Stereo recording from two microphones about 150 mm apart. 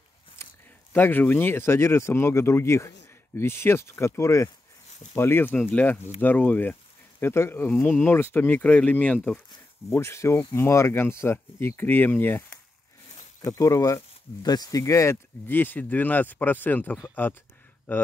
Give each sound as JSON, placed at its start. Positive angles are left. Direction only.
{"t": 0.4, "sound": "a sound", "side_deg": 20}
{"t": 0.9, "sound": "speech", "side_deg": 10}
{"t": 9.8, "sound": "speech", "side_deg": 20}